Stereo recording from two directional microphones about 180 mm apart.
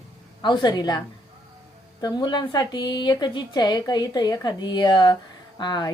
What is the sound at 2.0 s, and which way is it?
A woman's voice, 25° left (ahead or behind).